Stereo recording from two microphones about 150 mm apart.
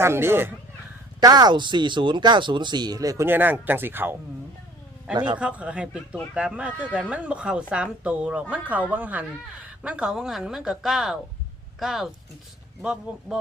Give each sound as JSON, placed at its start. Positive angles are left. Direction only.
{"t": 0.0, "sound": "a woman's voice", "side_deg": -15}
{"t": 1.2, "sound": "speech", "side_deg": -25}
{"t": 5.1, "sound": "a man's voice", "side_deg": -30}
{"t": 5.4, "sound": "a woman's voice", "side_deg": -10}